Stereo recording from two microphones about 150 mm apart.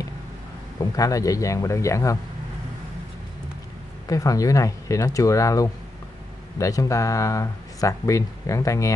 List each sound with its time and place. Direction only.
0.9 s speech: 25° left (ahead or behind)
4.1 s speech: 20° left (ahead or behind)